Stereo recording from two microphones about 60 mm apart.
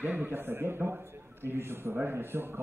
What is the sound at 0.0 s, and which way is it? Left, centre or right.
A man's voice, right.